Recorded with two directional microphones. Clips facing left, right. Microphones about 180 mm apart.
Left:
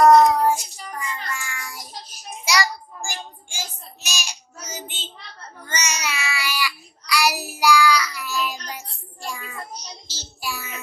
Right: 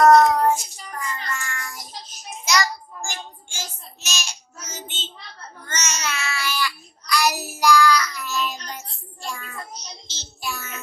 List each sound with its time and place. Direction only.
0.0 s child singing: 10° left (ahead or behind)
7.6 s music: 10° left (ahead or behind)
9.2 s child singing: 15° left (ahead or behind)